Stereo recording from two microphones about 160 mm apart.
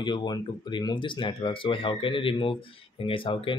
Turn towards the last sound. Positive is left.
turn(degrees=35)  # may be behind; listen again after turning